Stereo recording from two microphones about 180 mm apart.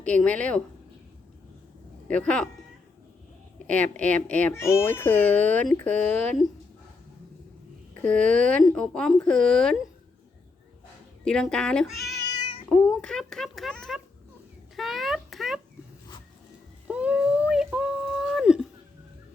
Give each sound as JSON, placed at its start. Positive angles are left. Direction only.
{"t": 0.0, "sound": "speech", "side_deg": 5}
{"t": 2.0, "sound": "speech", "side_deg": 5}
{"t": 3.7, "sound": "speech", "side_deg": 5}
{"t": 8.0, "sound": "speech", "side_deg": 5}
{"t": 11.3, "sound": "speech", "side_deg": 5}
{"t": 12.3, "sound": "cat", "side_deg": 25}
{"t": 12.6, "sound": "speech", "side_deg": 5}
{"t": 14.8, "sound": "a sound", "side_deg": 0}
{"t": 16.9, "sound": "a sound", "side_deg": -5}